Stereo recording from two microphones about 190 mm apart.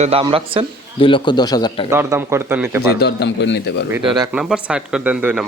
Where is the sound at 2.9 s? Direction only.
60° left (ahead or behind).